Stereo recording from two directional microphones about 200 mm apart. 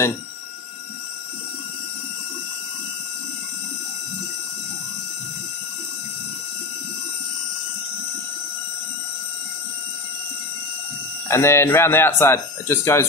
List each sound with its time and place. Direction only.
11.2 s speech: 10° left (ahead or behind)